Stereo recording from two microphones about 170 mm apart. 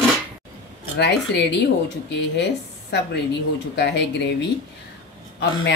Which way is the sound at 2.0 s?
90° left.